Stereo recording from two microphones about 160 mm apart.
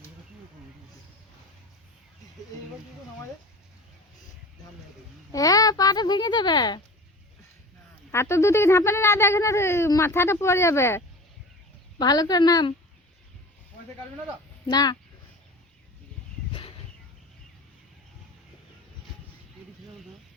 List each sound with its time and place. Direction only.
5.3 s a child's voice: 20° left (ahead or behind)
8.1 s a child's voice: 15° left (ahead or behind)
14.7 s a child's voice: 25° left (ahead or behind)
16.5 s a sound: 35° left (ahead or behind)